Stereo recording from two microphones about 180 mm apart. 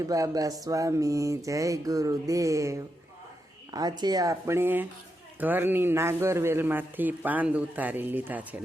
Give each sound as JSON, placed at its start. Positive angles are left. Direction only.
{"t": 0.0, "sound": "a man's voice", "side_deg": -20}